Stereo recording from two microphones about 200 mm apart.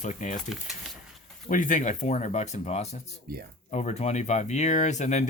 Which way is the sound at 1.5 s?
40° left (ahead or behind).